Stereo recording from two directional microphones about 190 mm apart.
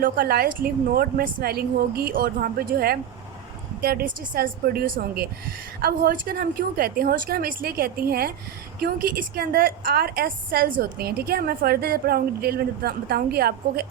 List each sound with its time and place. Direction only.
0.0 s a woman's voice: 50° right (ahead or behind)